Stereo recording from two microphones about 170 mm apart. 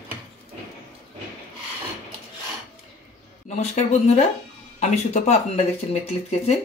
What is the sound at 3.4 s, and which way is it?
Speech, 45° left (ahead or behind).